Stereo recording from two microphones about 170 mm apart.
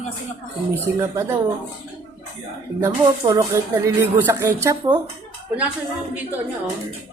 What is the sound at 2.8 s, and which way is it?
Speech, 20° right (ahead or behind).